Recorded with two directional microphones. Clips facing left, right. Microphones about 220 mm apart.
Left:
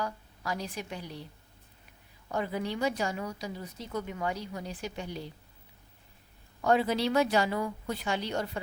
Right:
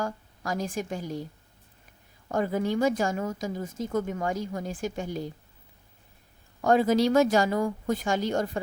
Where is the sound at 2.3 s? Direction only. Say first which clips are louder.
Right 6 dB; 45° right (ahead or behind).